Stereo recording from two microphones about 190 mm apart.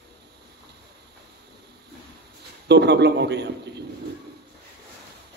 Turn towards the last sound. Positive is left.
turn(degrees=-60)  # may be behind; listen again after turning